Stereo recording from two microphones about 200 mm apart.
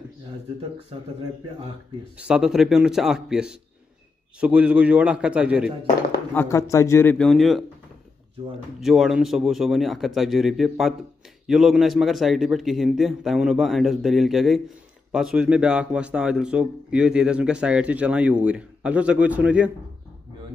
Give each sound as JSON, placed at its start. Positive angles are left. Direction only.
{"t": 2.1, "sound": "a man's voice", "side_deg": -5}
{"t": 6.3, "sound": "a man's voice", "side_deg": 15}
{"t": 8.8, "sound": "a man's voice", "side_deg": 0}